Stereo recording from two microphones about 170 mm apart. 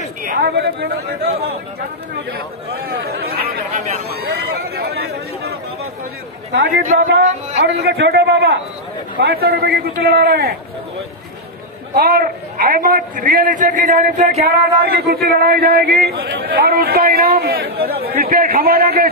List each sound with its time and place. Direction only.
0.2 s speech: 65° right (ahead or behind)
2.7 s speech: 65° right (ahead or behind)
6.8 s a man's voice: 50° right (ahead or behind)
7.8 s speech: 75° right (ahead or behind)
9.2 s speech: 65° right (ahead or behind)
11.9 s a man's voice: 65° right (ahead or behind); by 14.4 s 45° right (ahead or behind)
14.4 s speech: 70° right (ahead or behind)